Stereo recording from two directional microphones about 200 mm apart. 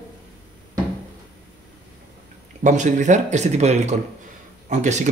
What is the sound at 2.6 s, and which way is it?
A man's voice, 35° right (ahead or behind).